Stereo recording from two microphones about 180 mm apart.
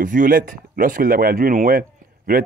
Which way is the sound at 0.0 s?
50° right (ahead or behind).